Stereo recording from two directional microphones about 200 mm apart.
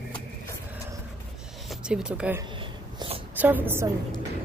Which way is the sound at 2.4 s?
25° right (ahead or behind).